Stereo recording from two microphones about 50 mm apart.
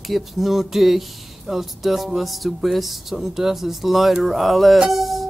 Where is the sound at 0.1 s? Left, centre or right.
Centre.